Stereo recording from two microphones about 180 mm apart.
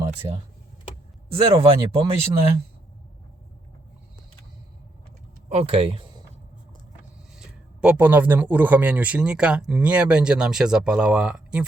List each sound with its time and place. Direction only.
1.3 s speech: 35° right (ahead or behind)
5.5 s speech: 35° right (ahead or behind)
7.3 s speech: 5° right (ahead or behind)